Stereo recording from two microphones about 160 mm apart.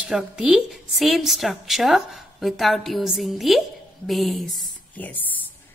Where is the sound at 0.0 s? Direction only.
5° right (ahead or behind).